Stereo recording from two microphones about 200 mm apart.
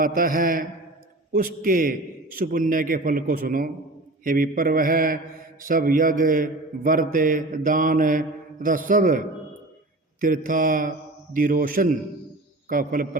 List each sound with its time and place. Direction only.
0.0 s a man's voice: 45° right (ahead or behind)